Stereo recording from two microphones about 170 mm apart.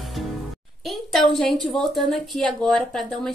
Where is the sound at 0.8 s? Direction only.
Centre (ahead or behind).